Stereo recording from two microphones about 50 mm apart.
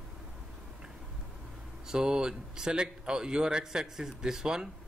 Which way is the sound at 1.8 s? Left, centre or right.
Centre.